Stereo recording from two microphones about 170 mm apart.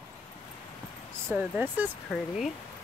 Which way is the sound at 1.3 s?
10° right (ahead or behind).